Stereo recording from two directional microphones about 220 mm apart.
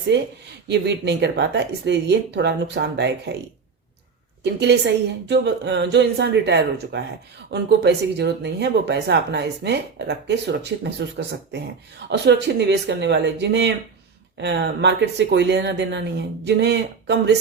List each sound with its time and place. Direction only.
0.7 s speech: 50° right (ahead or behind)
4.4 s speech: 50° right (ahead or behind)
12.0 s speech: 50° right (ahead or behind)